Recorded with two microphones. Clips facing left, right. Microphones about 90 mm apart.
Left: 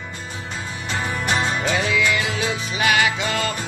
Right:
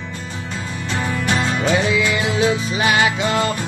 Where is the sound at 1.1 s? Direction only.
15° left (ahead or behind).